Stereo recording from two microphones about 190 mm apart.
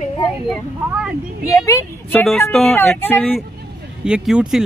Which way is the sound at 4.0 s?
5° right (ahead or behind).